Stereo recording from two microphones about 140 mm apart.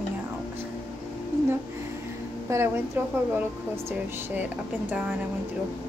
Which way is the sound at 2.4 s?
20° right (ahead or behind).